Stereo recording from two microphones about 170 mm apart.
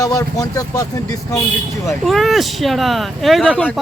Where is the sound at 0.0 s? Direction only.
20° left (ahead or behind).